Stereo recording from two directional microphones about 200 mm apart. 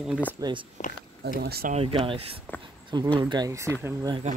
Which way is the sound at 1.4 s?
50° right (ahead or behind).